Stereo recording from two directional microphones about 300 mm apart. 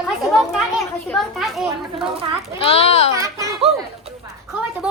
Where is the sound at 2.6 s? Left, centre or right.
Centre.